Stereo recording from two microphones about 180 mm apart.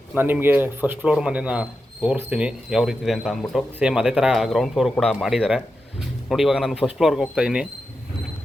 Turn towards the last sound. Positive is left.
turn(degrees=-5)  # may be behind; listen again after turning